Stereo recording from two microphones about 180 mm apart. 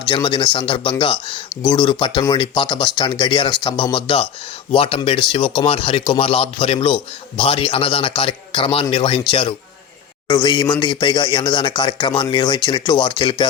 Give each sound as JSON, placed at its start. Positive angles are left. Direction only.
{"t": 0.1, "sound": "a man's voice", "side_deg": 25}